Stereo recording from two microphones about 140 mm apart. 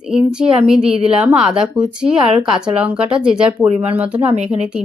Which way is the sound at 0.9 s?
45° right (ahead or behind).